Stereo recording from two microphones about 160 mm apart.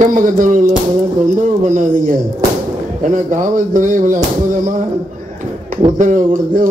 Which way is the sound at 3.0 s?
55° right (ahead or behind).